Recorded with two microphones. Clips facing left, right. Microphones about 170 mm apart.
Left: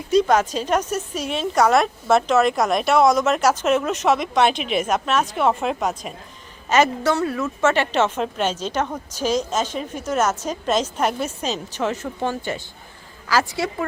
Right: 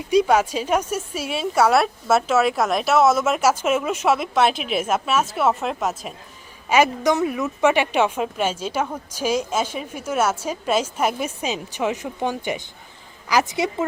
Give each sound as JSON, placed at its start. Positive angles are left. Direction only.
{"t": 0.1, "sound": "a woman's voice", "side_deg": -10}